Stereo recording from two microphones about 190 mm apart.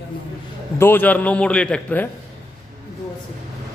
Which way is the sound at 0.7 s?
10° left (ahead or behind).